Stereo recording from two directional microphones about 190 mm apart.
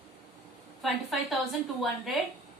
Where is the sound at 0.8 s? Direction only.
Centre (ahead or behind).